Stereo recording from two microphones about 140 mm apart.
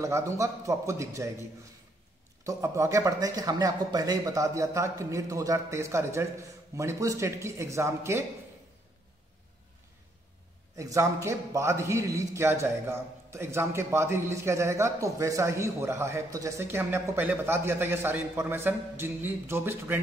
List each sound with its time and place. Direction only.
0.0 s a man's voice: 20° right (ahead or behind)
10.8 s a man's voice: 20° right (ahead or behind)